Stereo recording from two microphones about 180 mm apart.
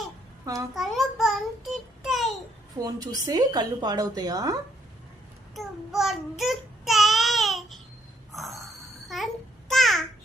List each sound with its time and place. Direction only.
0.4 s a child's voice: 20° right (ahead or behind)
0.7 s a sound: centre (ahead or behind)
2.7 s a woman's voice: 20° right (ahead or behind)
5.5 s child singing: centre (ahead or behind)
8.3 s a sound: centre (ahead or behind)
9.0 s babbling: centre (ahead or behind)